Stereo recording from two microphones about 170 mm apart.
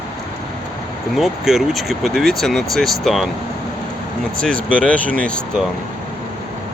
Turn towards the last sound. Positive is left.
turn(degrees=5)  # may be behind; listen again after turning